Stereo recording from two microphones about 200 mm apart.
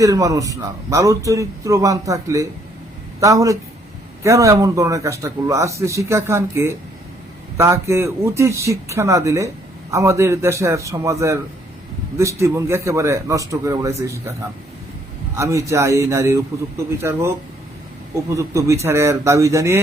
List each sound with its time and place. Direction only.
0.0 s a man's voice: 15° right (ahead or behind)
15.4 s a man's voice: 15° right (ahead or behind)